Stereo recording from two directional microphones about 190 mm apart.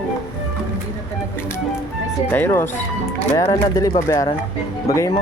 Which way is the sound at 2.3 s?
10° left (ahead or behind).